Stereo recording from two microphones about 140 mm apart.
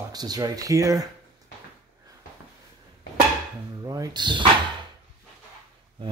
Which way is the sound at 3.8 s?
25° right (ahead or behind).